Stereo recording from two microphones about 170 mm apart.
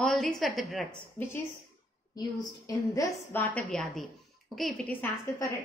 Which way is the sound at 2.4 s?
20° left (ahead or behind).